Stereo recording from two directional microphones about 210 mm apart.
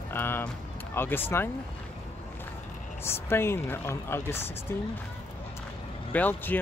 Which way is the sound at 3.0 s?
10° left (ahead or behind).